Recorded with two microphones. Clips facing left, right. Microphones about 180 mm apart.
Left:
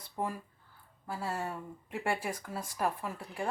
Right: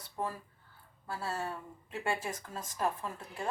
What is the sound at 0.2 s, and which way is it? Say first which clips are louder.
A woman's voice: left 2 dB; 20° left (ahead or behind).